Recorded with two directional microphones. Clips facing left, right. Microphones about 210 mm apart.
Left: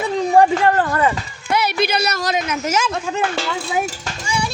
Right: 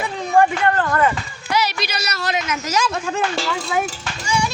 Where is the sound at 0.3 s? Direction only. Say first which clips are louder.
Left 2 dB; 30° left (ahead or behind).